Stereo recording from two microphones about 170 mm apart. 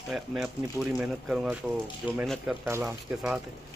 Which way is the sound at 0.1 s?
5° right (ahead or behind).